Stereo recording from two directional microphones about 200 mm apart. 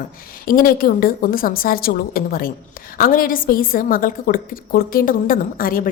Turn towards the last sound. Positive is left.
turn(degrees=45)  # may be behind; listen again after turning